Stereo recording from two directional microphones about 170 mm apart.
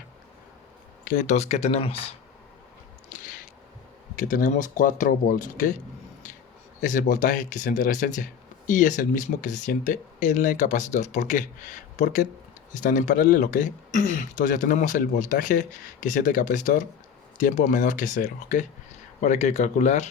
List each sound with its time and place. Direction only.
1.0 s speech: 50° left (ahead or behind)
4.1 s speech: 55° left (ahead or behind)
6.8 s speech: 50° left (ahead or behind)